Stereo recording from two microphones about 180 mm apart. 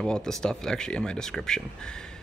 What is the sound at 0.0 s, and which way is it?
Speech, 5° left (ahead or behind).